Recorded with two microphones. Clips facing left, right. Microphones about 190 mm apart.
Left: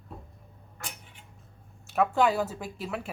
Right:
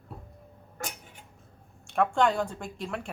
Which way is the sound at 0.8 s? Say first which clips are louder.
Right 5 dB; 45° right (ahead or behind).